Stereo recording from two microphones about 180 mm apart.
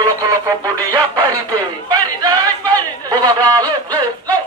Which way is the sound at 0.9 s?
25° right (ahead or behind).